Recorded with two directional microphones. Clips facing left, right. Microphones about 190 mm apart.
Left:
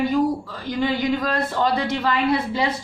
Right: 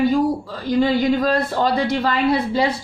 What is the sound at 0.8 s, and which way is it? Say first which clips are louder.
A woman's voice: right 5 dB; 35° right (ahead or behind).